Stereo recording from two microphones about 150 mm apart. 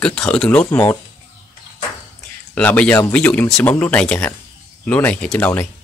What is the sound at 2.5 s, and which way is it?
Speech, 10° left (ahead or behind).